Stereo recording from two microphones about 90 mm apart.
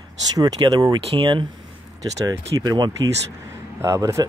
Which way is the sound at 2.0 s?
35° right (ahead or behind).